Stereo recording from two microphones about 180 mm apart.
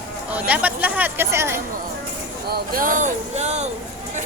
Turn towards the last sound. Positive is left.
turn(degrees=-40)  # may be behind; listen again after turning